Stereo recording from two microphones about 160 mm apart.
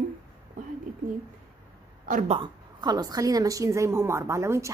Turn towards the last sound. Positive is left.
turn(degrees=-20)  # may be behind; listen again after turning